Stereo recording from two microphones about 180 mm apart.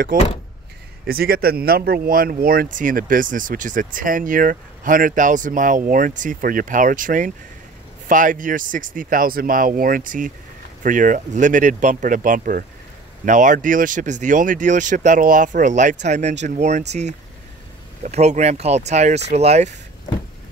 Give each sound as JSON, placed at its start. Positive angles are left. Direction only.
{"t": 0.1, "sound": "a man's voice", "side_deg": -50}
{"t": 18.0, "sound": "speech", "side_deg": -40}